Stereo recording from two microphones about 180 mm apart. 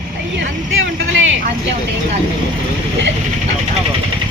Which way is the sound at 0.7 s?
90° right.